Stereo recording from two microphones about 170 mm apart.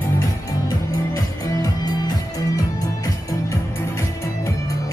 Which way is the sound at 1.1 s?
20° left (ahead or behind).